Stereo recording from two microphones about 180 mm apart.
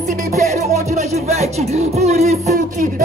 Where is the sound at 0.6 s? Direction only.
40° right (ahead or behind).